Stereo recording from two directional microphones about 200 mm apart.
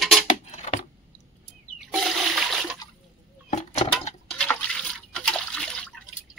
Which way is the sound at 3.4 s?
35° left (ahead or behind).